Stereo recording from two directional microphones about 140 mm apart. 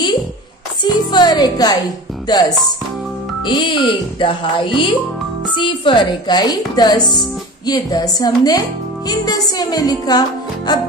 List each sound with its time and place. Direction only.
0.8 s music: 30° left (ahead or behind)
2.2 s speech: 30° left (ahead or behind)